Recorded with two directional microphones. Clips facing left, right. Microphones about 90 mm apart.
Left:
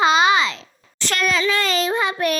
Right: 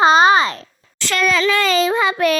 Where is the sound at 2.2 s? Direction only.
90° right.